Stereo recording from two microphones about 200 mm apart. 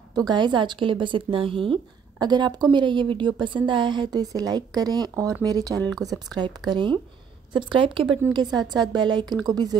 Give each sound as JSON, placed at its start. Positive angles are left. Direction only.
{"t": 0.3, "sound": "speech", "side_deg": -20}